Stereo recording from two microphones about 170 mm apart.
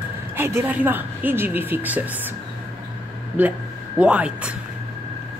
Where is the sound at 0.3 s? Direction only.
15° right (ahead or behind).